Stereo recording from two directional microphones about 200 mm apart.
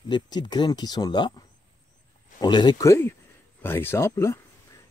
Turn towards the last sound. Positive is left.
turn(degrees=15)  # may be behind; listen again after turning